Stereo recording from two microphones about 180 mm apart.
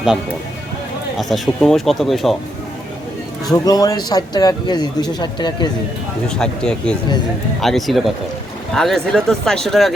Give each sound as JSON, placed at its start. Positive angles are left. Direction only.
{"t": 1.2, "sound": "speech", "side_deg": 0}
{"t": 3.4, "sound": "a man's voice", "side_deg": 20}
{"t": 6.2, "sound": "speech", "side_deg": 5}